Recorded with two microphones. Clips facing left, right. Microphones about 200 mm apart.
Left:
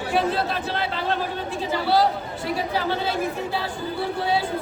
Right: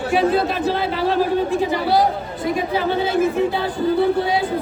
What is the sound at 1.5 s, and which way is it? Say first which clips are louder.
Speech: right 4 dB; 15° right (ahead or behind).